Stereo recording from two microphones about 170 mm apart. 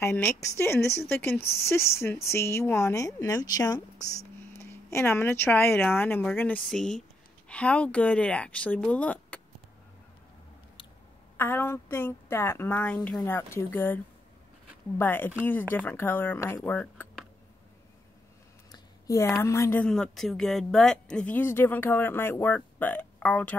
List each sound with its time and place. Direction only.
0.0 s a woman's voice: 15° left (ahead or behind)
11.3 s a woman's voice: 10° left (ahead or behind)
18.7 s a woman's voice: 20° left (ahead or behind)